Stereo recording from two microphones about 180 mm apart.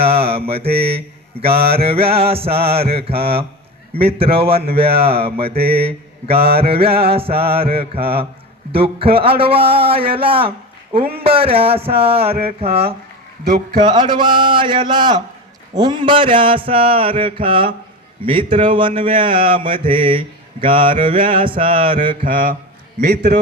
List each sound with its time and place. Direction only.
0.0 s mantra: 30° right (ahead or behind)
23.0 s a man's voice: 65° right (ahead or behind)